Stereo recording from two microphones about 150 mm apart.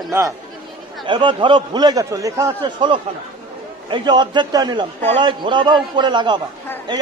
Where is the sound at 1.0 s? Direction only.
35° right (ahead or behind).